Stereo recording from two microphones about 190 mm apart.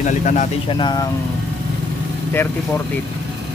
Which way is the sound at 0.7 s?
25° left (ahead or behind).